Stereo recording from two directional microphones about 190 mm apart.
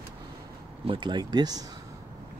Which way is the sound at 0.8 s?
25° right (ahead or behind).